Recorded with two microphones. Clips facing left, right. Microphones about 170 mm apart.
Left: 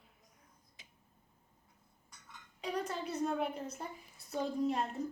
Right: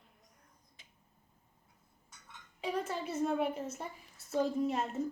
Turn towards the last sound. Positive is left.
turn(degrees=0)  # may be behind; listen again after turning